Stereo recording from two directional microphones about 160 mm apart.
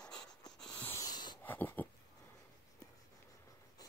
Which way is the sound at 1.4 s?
10° left (ahead or behind).